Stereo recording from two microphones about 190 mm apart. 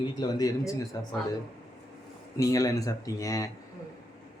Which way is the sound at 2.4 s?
20° left (ahead or behind).